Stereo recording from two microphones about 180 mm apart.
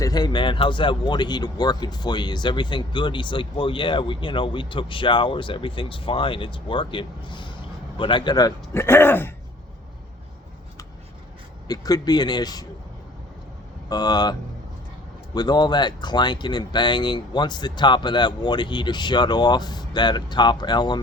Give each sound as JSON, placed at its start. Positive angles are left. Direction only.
{"t": 0.0, "sound": "a man's voice", "side_deg": 20}
{"t": 11.7, "sound": "speech", "side_deg": 20}
{"t": 13.9, "sound": "speech", "side_deg": 20}
{"t": 15.4, "sound": "speech", "side_deg": 25}